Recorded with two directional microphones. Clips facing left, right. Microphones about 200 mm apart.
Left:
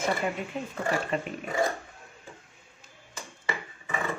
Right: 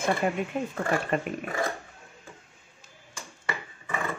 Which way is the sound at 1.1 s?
55° right (ahead or behind).